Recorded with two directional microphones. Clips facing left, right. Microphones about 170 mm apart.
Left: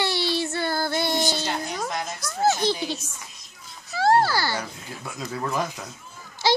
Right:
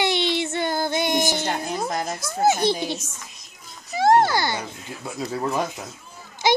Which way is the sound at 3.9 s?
20° right (ahead or behind).